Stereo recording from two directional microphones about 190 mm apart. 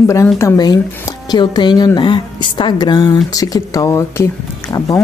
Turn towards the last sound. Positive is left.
turn(degrees=15)  # may be behind; listen again after turning